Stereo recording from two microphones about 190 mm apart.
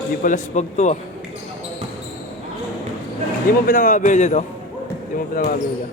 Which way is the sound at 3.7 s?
45° left (ahead or behind).